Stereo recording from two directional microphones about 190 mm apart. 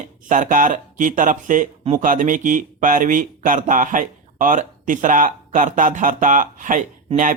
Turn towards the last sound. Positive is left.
turn(degrees=-40)  # may be behind; listen again after turning